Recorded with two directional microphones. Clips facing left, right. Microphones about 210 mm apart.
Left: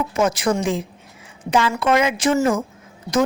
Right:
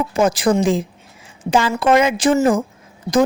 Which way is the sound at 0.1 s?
30° right (ahead or behind).